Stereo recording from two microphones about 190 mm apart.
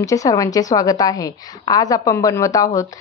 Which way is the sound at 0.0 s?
15° left (ahead or behind).